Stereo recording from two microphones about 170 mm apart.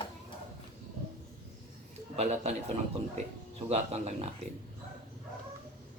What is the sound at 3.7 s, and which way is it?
Speech, 40° right (ahead or behind).